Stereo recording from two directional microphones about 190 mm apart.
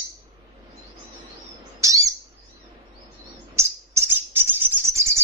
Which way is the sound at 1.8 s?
15° right (ahead or behind).